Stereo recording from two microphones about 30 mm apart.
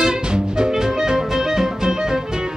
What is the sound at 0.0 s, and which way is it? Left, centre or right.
Music, right.